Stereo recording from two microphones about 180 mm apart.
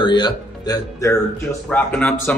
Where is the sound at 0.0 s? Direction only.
25° left (ahead or behind).